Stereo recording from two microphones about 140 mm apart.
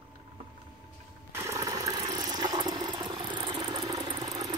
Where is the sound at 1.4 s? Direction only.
25° right (ahead or behind).